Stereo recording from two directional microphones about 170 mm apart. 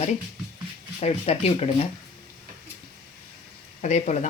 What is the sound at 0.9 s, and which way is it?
Speech, 40° left (ahead or behind).